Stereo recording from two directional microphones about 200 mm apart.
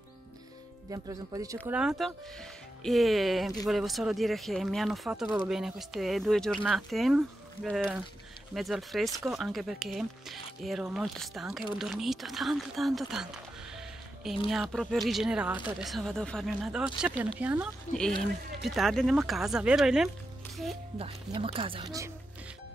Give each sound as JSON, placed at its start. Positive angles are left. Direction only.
{"t": 0.8, "sound": "speech", "side_deg": -20}
{"t": 14.5, "sound": "speech", "side_deg": 0}
{"t": 18.7, "sound": "speech", "side_deg": 0}
{"t": 21.0, "sound": "speech", "side_deg": -30}